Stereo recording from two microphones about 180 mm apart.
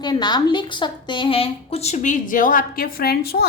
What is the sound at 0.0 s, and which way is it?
A woman's voice, 25° left (ahead or behind).